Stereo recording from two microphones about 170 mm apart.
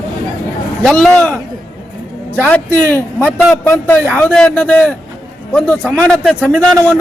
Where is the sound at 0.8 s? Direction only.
5° left (ahead or behind).